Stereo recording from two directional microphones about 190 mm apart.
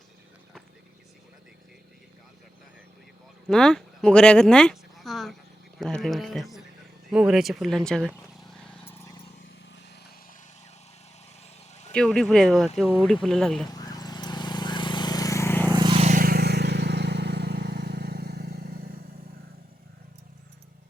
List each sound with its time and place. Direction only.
3.5 s speech: centre (ahead or behind)
5.8 s a sound: centre (ahead or behind)
7.1 s speech: 5° right (ahead or behind)
8.0 s a sound: centre (ahead or behind)
11.7 s a sound: 35° left (ahead or behind)
11.9 s speech: 5° left (ahead or behind)
13.7 s vehicle: 20° left (ahead or behind)
15.7 s vehicle: 25° right (ahead or behind)
16.0 s vehicle: 45° right (ahead or behind)